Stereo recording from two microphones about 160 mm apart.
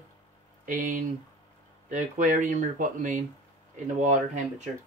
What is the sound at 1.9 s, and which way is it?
Speech, 50° right (ahead or behind).